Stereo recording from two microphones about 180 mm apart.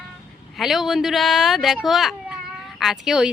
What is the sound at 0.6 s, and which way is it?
A child's voice, centre (ahead or behind).